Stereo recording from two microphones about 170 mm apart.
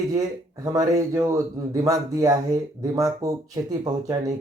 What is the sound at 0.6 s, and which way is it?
Speech, 20° right (ahead or behind).